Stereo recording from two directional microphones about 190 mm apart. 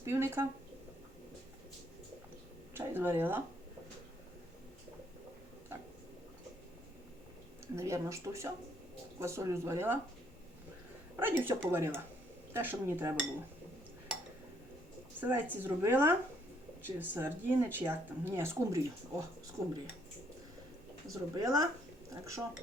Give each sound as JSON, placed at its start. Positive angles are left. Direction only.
{"t": 0.0, "sound": "speech", "side_deg": -15}
{"t": 2.7, "sound": "speech", "side_deg": -10}
{"t": 7.8, "sound": "speech", "side_deg": -15}
{"t": 11.2, "sound": "speech", "side_deg": -10}
{"t": 15.2, "sound": "speech", "side_deg": -10}
{"t": 21.1, "sound": "speech", "side_deg": -20}